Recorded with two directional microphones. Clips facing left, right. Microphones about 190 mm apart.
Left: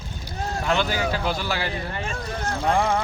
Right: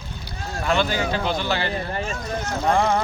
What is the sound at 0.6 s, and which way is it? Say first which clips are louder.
Speech: right 2 dB; 15° left (ahead or behind).